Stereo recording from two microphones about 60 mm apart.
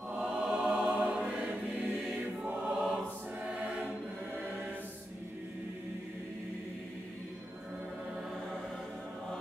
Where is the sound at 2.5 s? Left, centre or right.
Right.